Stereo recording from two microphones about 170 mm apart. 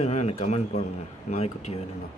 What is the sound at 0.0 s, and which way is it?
A man's voice, 40° left (ahead or behind).